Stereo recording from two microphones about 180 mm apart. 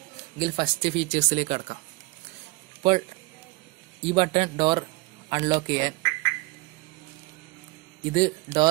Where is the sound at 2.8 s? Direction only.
25° right (ahead or behind).